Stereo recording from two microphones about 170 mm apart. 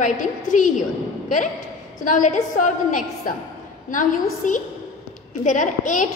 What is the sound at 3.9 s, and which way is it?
A woman's voice, 50° left (ahead or behind).